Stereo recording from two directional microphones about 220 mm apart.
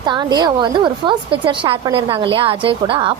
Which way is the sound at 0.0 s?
20° right (ahead or behind).